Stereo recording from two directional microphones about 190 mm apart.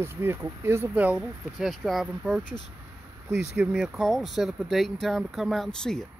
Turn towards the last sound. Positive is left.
turn(degrees=5)  # may be behind; listen again after turning